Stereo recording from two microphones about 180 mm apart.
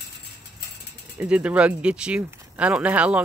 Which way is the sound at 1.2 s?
5° right (ahead or behind).